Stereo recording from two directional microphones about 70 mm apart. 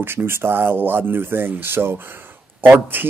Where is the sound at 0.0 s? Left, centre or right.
Right.